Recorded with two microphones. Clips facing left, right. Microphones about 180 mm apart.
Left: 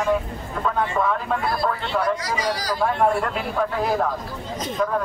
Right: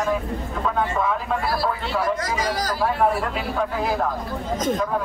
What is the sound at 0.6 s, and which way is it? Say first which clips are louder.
Speech: left 1 dB; centre (ahead or behind).